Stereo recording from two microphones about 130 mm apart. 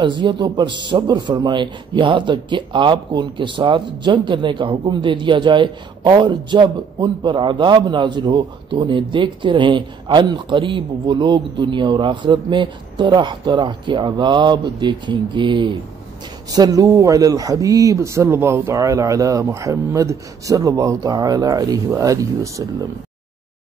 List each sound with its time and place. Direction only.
0.0 s a man's voice: 35° right (ahead or behind)